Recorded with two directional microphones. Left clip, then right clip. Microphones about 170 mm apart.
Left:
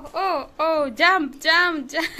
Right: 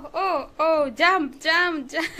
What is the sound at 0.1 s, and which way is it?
Speech, centre (ahead or behind).